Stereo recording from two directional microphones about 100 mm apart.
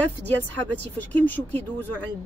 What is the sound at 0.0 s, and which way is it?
Speech, 20° left (ahead or behind).